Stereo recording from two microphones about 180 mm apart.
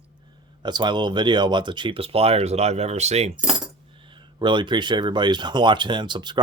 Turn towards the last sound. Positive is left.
turn(degrees=-25)  # may be behind; listen again after turning